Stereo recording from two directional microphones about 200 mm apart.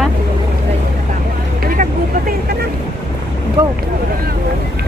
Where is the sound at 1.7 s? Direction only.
45° right (ahead or behind).